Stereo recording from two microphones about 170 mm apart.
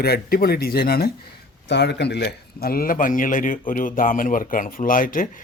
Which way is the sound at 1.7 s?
80° left.